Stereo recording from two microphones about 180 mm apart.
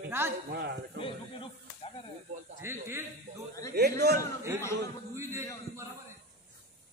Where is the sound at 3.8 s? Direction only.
65° right (ahead or behind).